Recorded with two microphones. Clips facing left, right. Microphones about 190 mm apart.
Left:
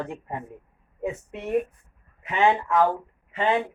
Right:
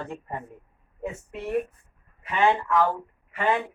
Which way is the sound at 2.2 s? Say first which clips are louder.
Left 1 dB; 20° left (ahead or behind).